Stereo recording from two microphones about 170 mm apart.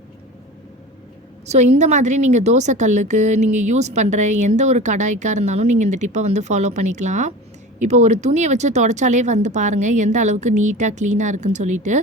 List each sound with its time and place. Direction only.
1.5 s a woman's voice: 40° right (ahead or behind)